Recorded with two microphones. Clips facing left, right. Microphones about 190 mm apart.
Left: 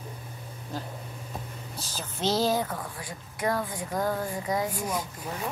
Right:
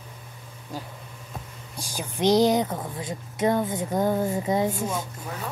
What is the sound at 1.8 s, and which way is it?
A woman's voice, 15° right (ahead or behind).